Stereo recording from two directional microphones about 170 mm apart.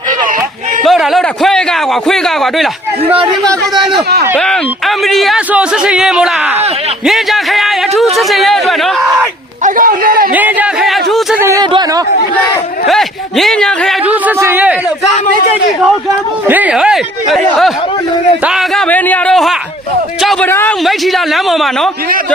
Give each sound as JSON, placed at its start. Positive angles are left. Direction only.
{"t": 0.9, "sound": "a sound", "side_deg": 0}
{"t": 2.0, "sound": "speech", "side_deg": 0}
{"t": 4.4, "sound": "speech", "side_deg": 0}
{"t": 9.6, "sound": "a man's voice", "side_deg": -55}
{"t": 10.3, "sound": "a sound", "side_deg": -10}
{"t": 11.3, "sound": "a sound", "side_deg": -15}
{"t": 12.9, "sound": "speech", "side_deg": 0}
{"t": 14.1, "sound": "speech", "side_deg": -10}
{"t": 16.5, "sound": "speech", "side_deg": -10}
{"t": 18.9, "sound": "speech", "side_deg": 10}
{"t": 20.8, "sound": "speech", "side_deg": 0}